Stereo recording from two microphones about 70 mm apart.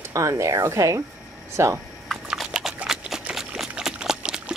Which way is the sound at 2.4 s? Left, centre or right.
Centre.